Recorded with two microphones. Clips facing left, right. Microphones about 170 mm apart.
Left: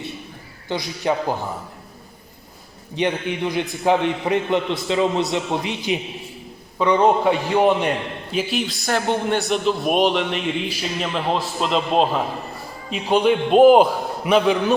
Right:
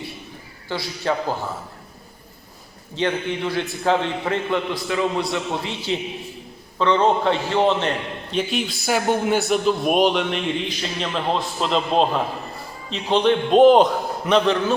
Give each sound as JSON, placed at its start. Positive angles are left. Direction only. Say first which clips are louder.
{"t": 0.7, "sound": "a man's voice", "louder": "left 2 dB", "side_deg": 15}
{"t": 2.9, "sound": "a man's voice", "louder": "left 1 dB", "side_deg": 15}